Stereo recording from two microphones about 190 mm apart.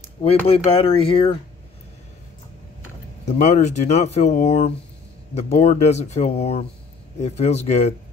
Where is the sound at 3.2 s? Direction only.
35° left (ahead or behind).